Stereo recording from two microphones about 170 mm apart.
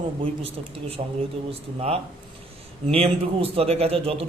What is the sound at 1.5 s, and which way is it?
A man's voice, 35° right (ahead or behind).